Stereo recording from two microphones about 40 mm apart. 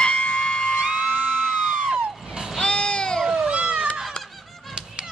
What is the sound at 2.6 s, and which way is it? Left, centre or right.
Music, left.